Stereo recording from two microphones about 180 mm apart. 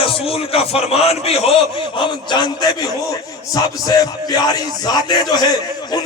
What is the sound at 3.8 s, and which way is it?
Speech, 20° left (ahead or behind).